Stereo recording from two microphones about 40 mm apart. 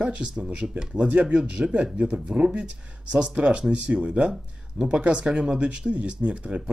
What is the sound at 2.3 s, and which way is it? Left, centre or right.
Speech, right.